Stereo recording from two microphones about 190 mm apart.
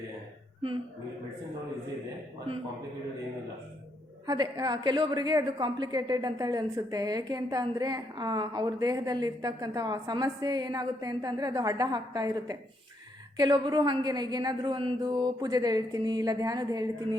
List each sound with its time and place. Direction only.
4.3 s a woman's voice: 20° right (ahead or behind)